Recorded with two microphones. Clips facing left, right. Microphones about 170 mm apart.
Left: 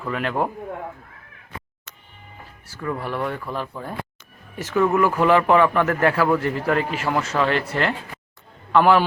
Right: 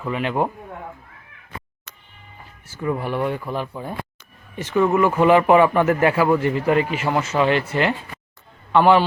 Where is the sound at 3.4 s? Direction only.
5° right (ahead or behind).